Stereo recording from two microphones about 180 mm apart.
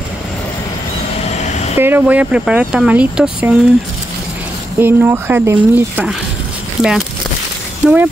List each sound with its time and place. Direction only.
1.8 s speech: 10° right (ahead or behind)
4.7 s speech: 10° right (ahead or behind)